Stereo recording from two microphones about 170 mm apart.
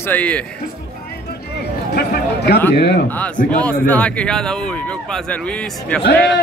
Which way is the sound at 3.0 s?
10° left (ahead or behind).